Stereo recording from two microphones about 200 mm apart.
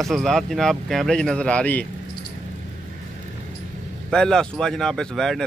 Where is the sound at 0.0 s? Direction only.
Centre (ahead or behind).